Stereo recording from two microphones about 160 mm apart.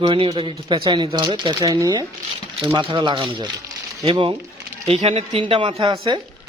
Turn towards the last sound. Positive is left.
turn(degrees=-30)  # may be behind; listen again after turning